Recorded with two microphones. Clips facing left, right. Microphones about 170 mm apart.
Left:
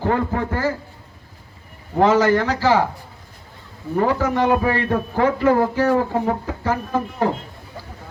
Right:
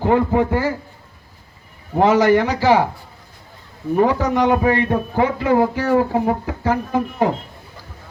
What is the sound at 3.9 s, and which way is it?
A man's voice, 15° right (ahead or behind).